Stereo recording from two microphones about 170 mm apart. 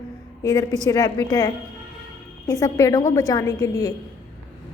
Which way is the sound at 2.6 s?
20° left (ahead or behind).